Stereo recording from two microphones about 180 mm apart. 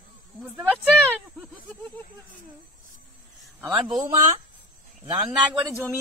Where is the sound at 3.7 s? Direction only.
Centre (ahead or behind).